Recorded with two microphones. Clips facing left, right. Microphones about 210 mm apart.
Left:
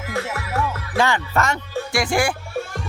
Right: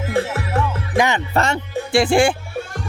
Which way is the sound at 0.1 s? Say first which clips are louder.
Right 5 dB; 30° right (ahead or behind).